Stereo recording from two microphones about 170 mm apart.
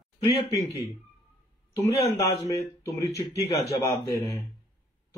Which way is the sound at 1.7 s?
15° left (ahead or behind).